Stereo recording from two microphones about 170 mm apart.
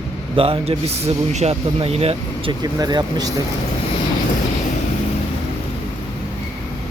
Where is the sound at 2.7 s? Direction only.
20° right (ahead or behind).